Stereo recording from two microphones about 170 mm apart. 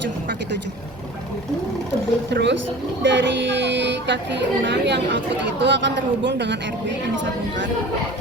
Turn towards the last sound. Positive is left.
turn(degrees=-90)